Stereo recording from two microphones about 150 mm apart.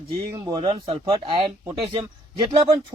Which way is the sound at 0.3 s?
20° right (ahead or behind).